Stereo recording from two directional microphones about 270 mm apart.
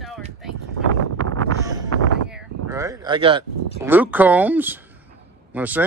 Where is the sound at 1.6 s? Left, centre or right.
Centre.